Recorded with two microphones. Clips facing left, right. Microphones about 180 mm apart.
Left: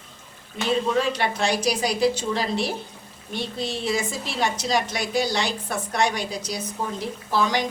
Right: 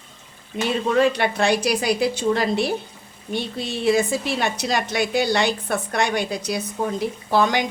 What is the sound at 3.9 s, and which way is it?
A woman's voice, 60° right (ahead or behind).